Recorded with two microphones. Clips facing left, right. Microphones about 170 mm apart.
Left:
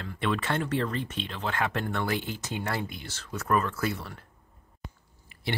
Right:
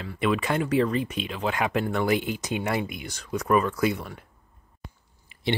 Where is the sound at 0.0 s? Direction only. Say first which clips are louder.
Right 4 dB; 10° right (ahead or behind).